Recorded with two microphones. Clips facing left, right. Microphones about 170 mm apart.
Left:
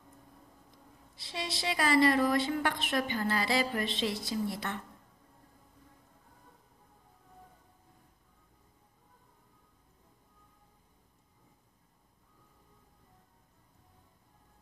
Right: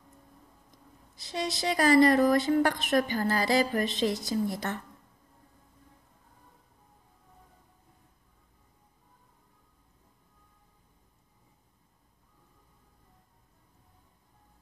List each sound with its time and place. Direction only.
1.1 s a woman's voice: 45° right (ahead or behind)